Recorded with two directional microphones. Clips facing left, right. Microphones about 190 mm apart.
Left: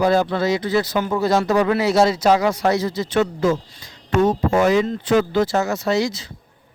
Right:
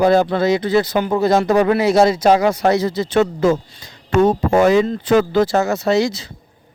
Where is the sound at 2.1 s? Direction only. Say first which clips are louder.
Right 3 dB; 55° right (ahead or behind).